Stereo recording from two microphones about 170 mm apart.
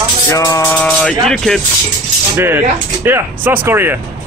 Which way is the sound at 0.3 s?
20° left (ahead or behind).